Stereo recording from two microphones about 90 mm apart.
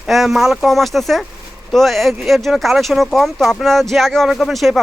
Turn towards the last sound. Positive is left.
turn(degrees=0)  # may be behind; listen again after turning